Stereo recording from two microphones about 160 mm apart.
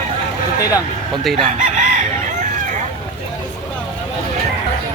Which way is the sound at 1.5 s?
50° right (ahead or behind).